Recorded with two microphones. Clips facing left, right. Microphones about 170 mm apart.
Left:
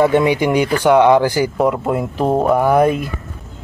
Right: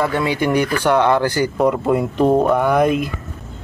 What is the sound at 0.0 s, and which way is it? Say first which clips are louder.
Speech: left 5 dB; 20° left (ahead or behind).